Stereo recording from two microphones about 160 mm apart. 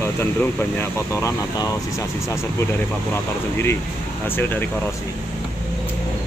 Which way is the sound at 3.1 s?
15° left (ahead or behind).